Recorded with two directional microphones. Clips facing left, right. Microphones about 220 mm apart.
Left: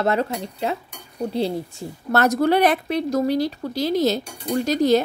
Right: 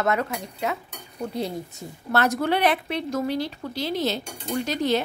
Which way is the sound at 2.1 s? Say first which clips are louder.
Left 5 dB; 40° left (ahead or behind).